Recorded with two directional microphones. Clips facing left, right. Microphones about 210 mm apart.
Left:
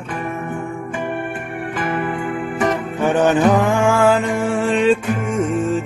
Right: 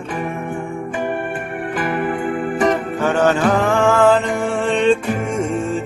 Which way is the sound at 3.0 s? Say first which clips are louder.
Left 2 dB; 15° left (ahead or behind).